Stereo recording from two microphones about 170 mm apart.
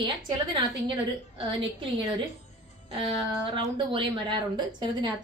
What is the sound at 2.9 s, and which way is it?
A woman's voice, 30° right (ahead or behind).